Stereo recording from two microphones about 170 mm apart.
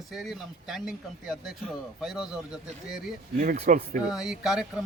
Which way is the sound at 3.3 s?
50° right (ahead or behind).